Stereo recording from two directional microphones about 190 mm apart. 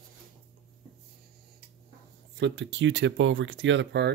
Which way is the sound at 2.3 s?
70° right (ahead or behind).